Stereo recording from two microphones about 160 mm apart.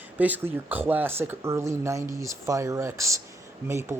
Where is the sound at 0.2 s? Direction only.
10° right (ahead or behind).